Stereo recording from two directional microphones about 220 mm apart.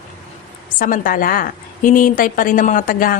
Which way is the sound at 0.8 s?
40° left (ahead or behind).